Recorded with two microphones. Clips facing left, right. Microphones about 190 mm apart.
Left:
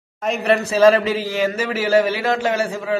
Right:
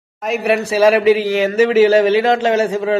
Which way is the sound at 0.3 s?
10° right (ahead or behind).